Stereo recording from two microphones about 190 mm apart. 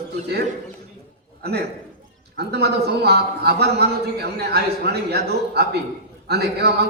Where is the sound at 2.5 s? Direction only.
60° right (ahead or behind).